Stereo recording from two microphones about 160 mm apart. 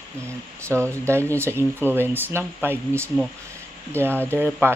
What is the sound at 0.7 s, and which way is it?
Speech, 15° right (ahead or behind).